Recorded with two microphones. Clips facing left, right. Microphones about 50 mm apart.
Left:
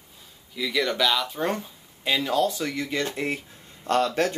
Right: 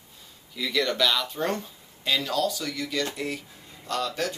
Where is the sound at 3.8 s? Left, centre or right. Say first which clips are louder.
Left 6 dB; left.